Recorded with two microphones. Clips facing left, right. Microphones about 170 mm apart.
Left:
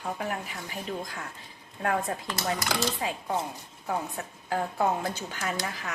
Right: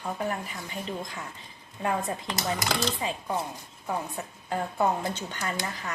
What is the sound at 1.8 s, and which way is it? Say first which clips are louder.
Speech: even; 5° right (ahead or behind).